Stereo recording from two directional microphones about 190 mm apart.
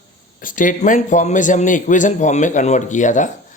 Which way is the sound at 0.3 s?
45° left (ahead or behind).